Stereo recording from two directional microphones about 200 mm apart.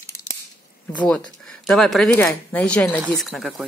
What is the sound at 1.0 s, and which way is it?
Speech, 5° left (ahead or behind).